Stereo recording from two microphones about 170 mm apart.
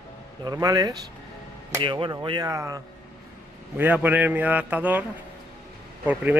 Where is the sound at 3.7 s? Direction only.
10° right (ahead or behind).